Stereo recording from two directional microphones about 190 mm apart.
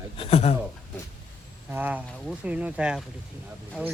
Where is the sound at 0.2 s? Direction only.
30° left (ahead or behind).